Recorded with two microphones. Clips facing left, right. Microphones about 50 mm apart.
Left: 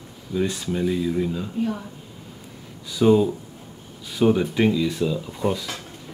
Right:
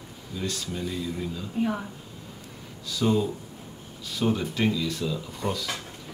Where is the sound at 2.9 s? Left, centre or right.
Centre.